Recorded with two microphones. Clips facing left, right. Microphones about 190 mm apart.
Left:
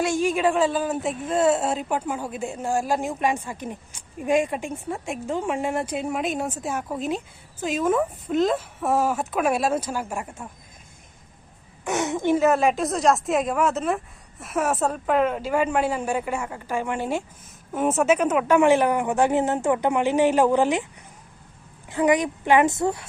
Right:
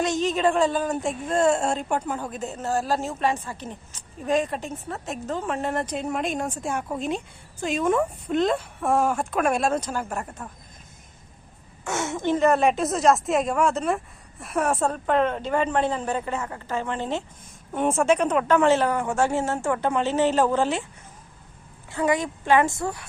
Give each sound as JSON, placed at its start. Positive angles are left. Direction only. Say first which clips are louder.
{"t": 0.0, "sound": "a woman's voice", "louder": "left 1 dB", "side_deg": 10}
{"t": 11.9, "sound": "a woman's voice", "louder": "left 3 dB", "side_deg": 20}
{"t": 21.8, "sound": "a woman's voice", "louder": "left 3 dB", "side_deg": 20}